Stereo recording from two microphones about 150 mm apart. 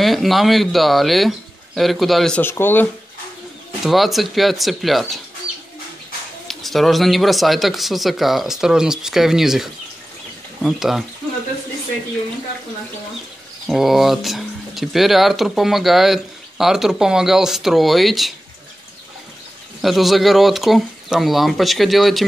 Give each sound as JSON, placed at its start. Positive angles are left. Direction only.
{"t": 0.0, "sound": "speech", "side_deg": 0}
{"t": 2.4, "sound": "speech", "side_deg": 15}
{"t": 3.8, "sound": "speech", "side_deg": 0}
{"t": 6.4, "sound": "speech", "side_deg": 0}
{"t": 13.7, "sound": "speech", "side_deg": 0}
{"t": 19.8, "sound": "speech", "side_deg": 0}